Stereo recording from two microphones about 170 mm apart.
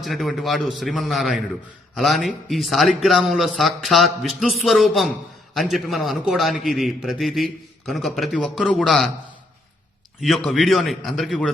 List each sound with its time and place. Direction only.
0.0 s a man's voice: centre (ahead or behind)
10.2 s a man's voice: centre (ahead or behind)